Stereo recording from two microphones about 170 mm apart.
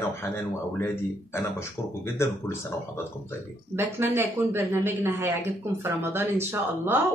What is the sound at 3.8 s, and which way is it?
A man's voice, 15° right (ahead or behind).